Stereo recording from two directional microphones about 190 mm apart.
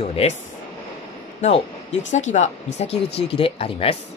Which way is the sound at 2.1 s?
40° left (ahead or behind).